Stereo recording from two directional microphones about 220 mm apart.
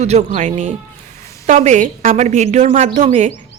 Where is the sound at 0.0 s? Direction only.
30° right (ahead or behind).